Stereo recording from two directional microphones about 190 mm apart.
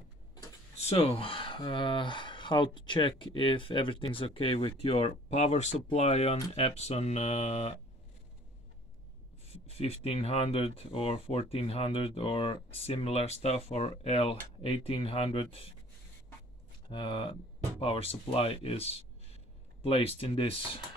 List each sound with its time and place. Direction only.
0.7 s speech: 30° left (ahead or behind)
9.5 s speech: 35° left (ahead or behind)
16.9 s speech: 25° left (ahead or behind)